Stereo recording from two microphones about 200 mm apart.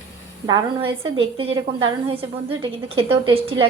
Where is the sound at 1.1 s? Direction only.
25° right (ahead or behind).